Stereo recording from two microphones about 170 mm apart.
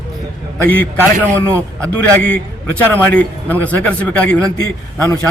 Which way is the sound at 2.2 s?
10° left (ahead or behind).